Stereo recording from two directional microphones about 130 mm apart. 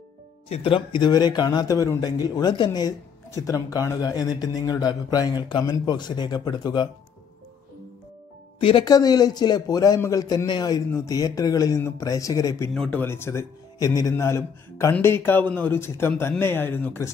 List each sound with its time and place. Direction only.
0.5 s speech: 45° left (ahead or behind)
8.5 s speech: 45° left (ahead or behind)
8.8 s speech: 30° left (ahead or behind)
12.7 s speech: 5° left (ahead or behind)
13.0 s speech: 20° left (ahead or behind)